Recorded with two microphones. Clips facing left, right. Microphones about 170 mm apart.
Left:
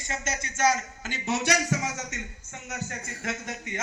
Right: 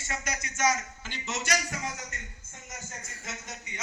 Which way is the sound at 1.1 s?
55° left (ahead or behind).